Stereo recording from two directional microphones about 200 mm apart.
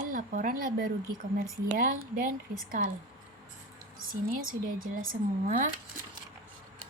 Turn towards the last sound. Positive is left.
turn(degrees=-40)  # may be behind; listen again after turning